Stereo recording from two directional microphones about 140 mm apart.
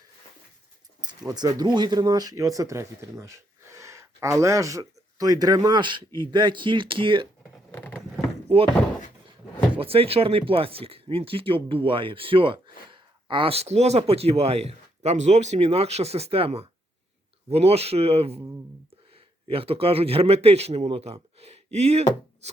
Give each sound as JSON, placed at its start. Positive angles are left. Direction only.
{"t": 1.3, "sound": "speech", "side_deg": -30}
{"t": 7.8, "sound": "patter", "side_deg": 10}
{"t": 9.7, "sound": "speech", "side_deg": -40}
{"t": 19.5, "sound": "speech", "side_deg": -40}